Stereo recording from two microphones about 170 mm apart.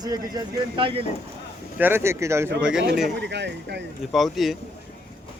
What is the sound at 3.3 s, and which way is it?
Speech, 90° right.